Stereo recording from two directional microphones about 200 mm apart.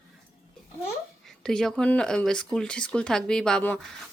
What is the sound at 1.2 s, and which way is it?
Speech, centre (ahead or behind).